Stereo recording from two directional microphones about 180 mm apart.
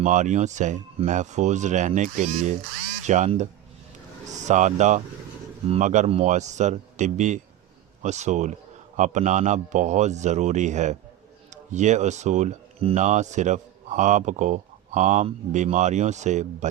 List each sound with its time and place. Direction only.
0.0 s speech: 40° right (ahead or behind)